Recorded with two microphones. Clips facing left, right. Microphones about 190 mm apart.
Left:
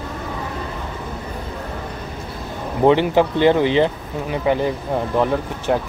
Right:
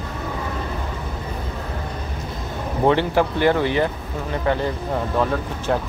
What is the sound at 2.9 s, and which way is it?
Speech, 20° left (ahead or behind).